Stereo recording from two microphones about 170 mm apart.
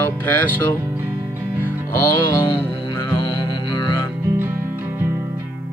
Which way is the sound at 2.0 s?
15° left (ahead or behind).